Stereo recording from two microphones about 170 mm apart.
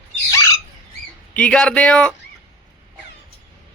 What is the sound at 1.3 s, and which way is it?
Speech, 5° left (ahead or behind).